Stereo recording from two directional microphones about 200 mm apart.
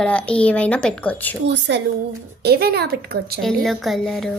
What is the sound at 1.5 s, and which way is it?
A woman's voice, 60° right (ahead or behind).